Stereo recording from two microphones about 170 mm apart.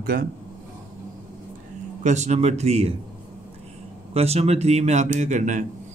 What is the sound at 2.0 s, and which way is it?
Speech, 45° right (ahead or behind).